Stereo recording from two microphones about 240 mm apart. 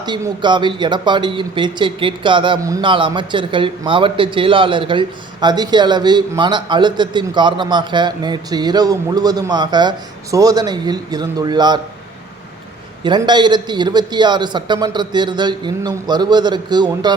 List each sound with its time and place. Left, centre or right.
0.0 s a man's voice: centre
13.0 s a man's voice: centre